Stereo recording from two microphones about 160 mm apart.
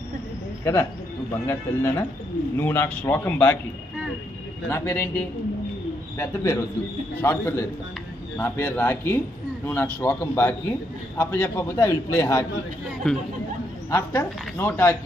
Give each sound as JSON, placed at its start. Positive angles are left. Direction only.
{"t": 1.4, "sound": "a man's voice", "side_deg": 15}
{"t": 4.6, "sound": "a man's voice", "side_deg": 15}
{"t": 13.0, "sound": "speech", "side_deg": 5}
{"t": 13.8, "sound": "a man's voice", "side_deg": 15}